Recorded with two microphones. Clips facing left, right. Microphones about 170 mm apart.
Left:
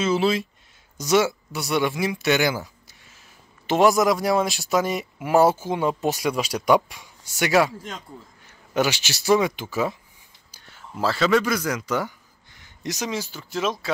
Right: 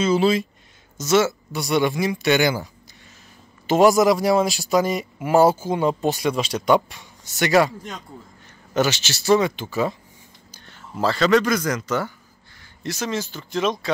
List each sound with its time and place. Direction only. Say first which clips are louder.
0.0 s speech: right 3 dB; centre (ahead or behind)
0.9 s speech: right 1 dB; 15° left (ahead or behind)